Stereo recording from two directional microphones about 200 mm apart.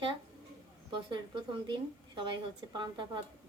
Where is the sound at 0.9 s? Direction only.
25° right (ahead or behind).